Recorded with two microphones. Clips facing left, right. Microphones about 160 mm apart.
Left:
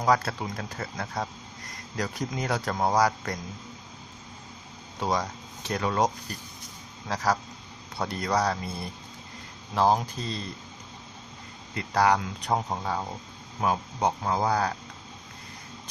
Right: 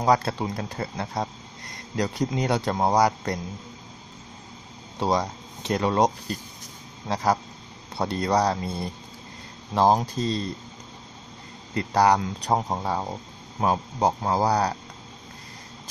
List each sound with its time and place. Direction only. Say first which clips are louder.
0.0 s speech: right 3 dB; 30° right (ahead or behind)
5.0 s speech: right 4 dB; 30° right (ahead or behind)
7.1 s speech: right 3 dB; 20° right (ahead or behind)
8.0 s speech: right 4 dB; 35° right (ahead or behind)
9.8 s speech: right 3 dB; 35° right (ahead or behind)
11.7 s speech: right 3 dB; 35° right (ahead or behind)